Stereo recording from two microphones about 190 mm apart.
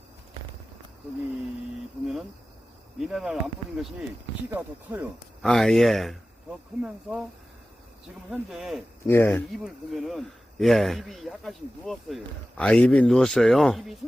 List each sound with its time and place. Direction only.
3.0 s speech: 5° right (ahead or behind)
5.4 s speech: centre (ahead or behind)
8.3 s speech: centre (ahead or behind)
9.0 s speech: 10° left (ahead or behind)
9.9 s speech: centre (ahead or behind)